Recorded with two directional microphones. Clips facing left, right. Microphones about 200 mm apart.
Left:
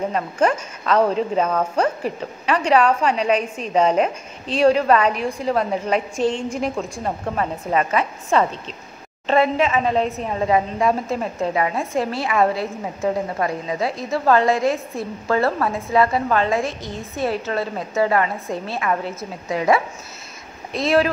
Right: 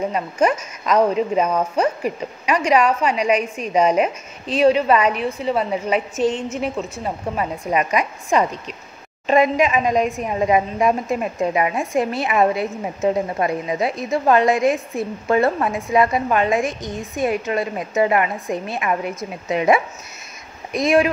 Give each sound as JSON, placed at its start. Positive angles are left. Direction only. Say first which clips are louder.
{"t": 0.1, "sound": "a woman's voice", "louder": "right 1 dB", "side_deg": -10}